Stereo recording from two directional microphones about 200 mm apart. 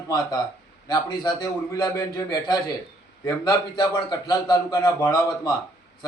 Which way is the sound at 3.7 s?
20° left (ahead or behind).